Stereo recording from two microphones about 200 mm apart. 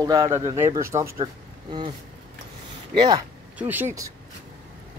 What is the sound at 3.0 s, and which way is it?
Speech, 20° right (ahead or behind).